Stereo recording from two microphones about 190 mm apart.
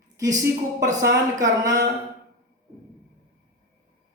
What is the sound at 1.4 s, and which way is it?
Mantra, 20° right (ahead or behind).